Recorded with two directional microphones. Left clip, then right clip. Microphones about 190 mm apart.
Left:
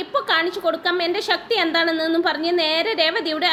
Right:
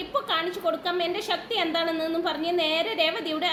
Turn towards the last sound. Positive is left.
turn(degrees=20)  # may be behind; listen again after turning